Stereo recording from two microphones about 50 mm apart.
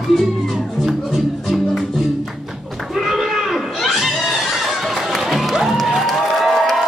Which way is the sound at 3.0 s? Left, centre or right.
Centre.